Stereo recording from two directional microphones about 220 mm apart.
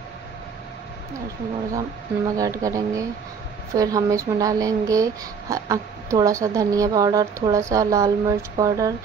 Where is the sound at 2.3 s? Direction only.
15° right (ahead or behind).